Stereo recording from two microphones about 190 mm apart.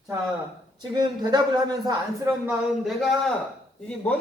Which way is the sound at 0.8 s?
20° right (ahead or behind).